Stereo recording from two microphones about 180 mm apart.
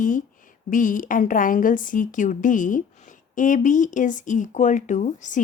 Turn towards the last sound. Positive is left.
turn(degrees=45)  # may be behind; listen again after turning